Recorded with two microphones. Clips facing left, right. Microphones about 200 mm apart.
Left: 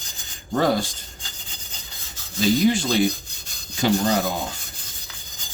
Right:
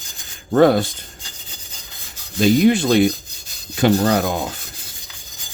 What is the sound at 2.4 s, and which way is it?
Speech, 60° right (ahead or behind).